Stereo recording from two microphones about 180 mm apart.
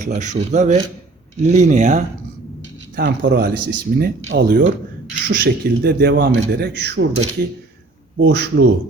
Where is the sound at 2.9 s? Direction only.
75° right (ahead or behind).